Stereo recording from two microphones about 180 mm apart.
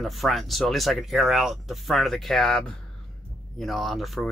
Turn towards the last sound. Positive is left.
turn(degrees=0)  # may be behind; listen again after turning